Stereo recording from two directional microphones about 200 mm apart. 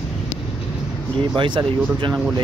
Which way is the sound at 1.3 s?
25° right (ahead or behind).